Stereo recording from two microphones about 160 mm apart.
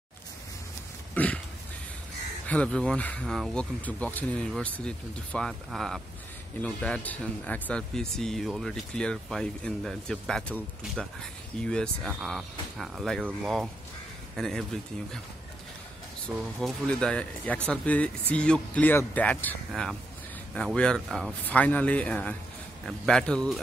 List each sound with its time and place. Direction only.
1.1 s throat clearing: 10° left (ahead or behind)
2.4 s speech: 10° left (ahead or behind)
16.3 s speech: centre (ahead or behind)